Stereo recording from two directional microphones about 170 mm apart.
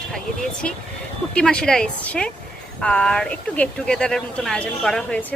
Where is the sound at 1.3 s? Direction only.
5° left (ahead or behind).